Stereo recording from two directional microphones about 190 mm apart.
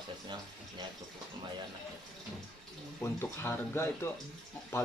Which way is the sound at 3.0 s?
10° left (ahead or behind).